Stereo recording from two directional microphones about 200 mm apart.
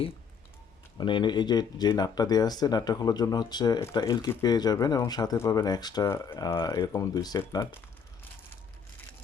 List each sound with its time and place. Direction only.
0.9 s speech: 25° left (ahead or behind)